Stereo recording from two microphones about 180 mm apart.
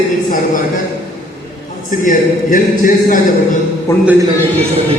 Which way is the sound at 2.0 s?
45° left (ahead or behind).